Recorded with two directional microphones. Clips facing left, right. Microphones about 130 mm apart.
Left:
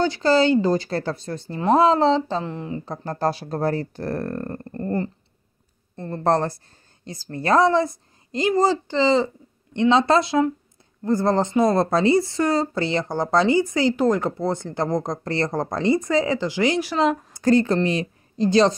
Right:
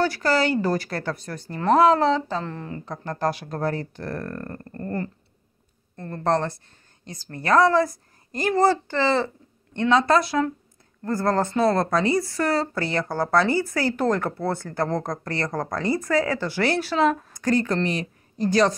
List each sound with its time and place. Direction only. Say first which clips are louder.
0.0 s a woman's voice: left 4 dB; 20° left (ahead or behind)
2.8 s a woman's voice: left 1 dB; 30° left (ahead or behind)
6.2 s a woman's voice: left 2 dB; 35° left (ahead or behind); by 17.3 s 15° left (ahead or behind)
17.3 s a woman's voice: left 4 dB; 30° left (ahead or behind)